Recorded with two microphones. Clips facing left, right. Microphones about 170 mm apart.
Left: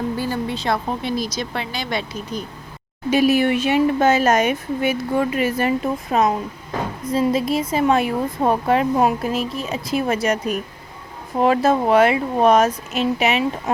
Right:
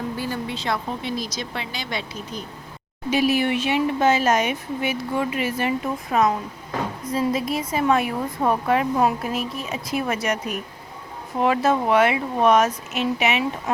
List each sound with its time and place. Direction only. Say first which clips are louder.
0.2 s a sound: left 4 dB; 40° left (ahead or behind)
0.6 s speech: left 4 dB; 40° left (ahead or behind)
1.4 s speech: left 4 dB; 50° left (ahead or behind)
3.1 s speech: left 4 dB; 50° left (ahead or behind)
5.8 s speech: left 2 dB; 25° left (ahead or behind)